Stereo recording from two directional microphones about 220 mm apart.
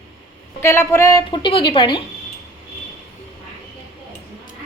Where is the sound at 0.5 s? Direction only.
10° left (ahead or behind).